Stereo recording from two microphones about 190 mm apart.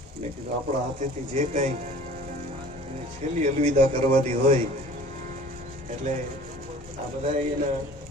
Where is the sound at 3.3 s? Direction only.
35° right (ahead or behind).